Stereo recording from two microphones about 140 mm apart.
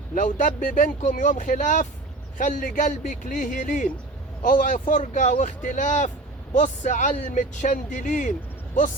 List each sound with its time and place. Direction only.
0.1 s a man's voice: 70° left (ahead or behind)